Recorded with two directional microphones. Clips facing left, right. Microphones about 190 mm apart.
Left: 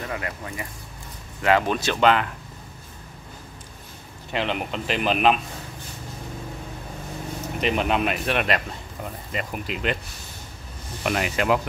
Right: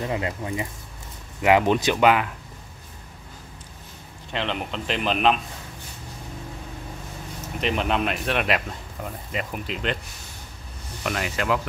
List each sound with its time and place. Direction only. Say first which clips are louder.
0.0 s speech: right 4 dB; 20° right (ahead or behind)
4.3 s a man's voice: left 2 dB; 5° left (ahead or behind)
7.6 s a man's voice: left 1 dB; 5° left (ahead or behind)
11.1 s speech: left 3 dB; 20° left (ahead or behind)